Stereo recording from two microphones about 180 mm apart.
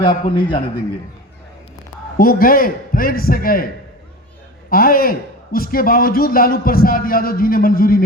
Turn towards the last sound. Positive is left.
turn(degrees=55)  # may be behind; listen again after turning